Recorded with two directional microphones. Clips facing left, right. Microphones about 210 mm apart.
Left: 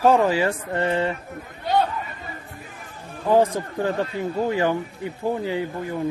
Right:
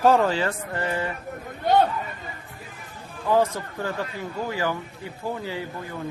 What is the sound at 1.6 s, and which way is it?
Chatter, 55° right (ahead or behind).